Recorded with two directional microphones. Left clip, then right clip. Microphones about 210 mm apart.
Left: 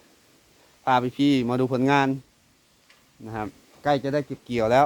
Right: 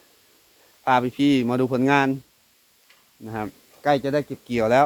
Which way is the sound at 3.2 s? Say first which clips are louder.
Right 2 dB; 5° left (ahead or behind).